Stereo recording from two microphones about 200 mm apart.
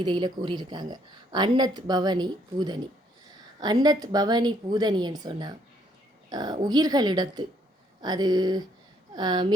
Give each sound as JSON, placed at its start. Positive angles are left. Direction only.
{"t": 0.0, "sound": "a woman's voice", "side_deg": -25}